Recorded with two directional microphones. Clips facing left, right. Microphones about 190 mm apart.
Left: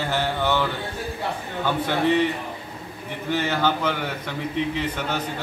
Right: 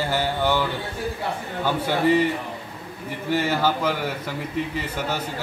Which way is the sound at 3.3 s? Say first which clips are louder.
Right 1 dB; 10° right (ahead or behind).